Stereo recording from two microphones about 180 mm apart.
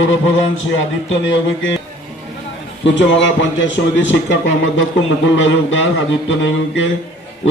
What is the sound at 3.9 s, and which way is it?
A man's voice, 90° left.